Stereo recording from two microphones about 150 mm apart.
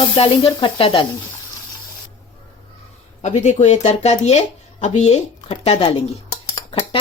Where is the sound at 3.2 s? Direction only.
50° left (ahead or behind).